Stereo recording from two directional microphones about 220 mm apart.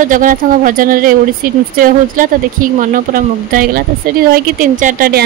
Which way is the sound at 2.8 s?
35° right (ahead or behind).